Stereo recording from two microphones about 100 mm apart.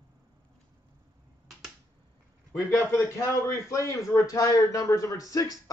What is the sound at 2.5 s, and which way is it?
Speech, 25° left (ahead or behind).